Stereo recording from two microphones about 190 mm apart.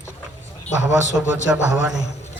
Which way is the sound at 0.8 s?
5° right (ahead or behind).